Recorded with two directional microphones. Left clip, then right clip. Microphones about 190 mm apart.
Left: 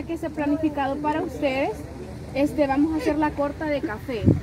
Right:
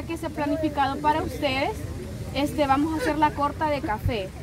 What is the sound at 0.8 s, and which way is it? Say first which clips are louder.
Speech: right 1 dB; 15° right (ahead or behind).